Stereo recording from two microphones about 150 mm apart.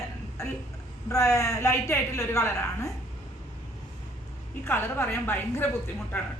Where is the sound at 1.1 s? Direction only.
20° left (ahead or behind).